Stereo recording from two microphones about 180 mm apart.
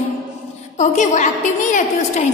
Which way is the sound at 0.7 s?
40° left (ahead or behind).